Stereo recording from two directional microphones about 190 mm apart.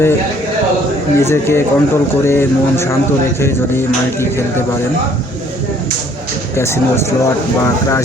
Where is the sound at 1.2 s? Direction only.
15° left (ahead or behind).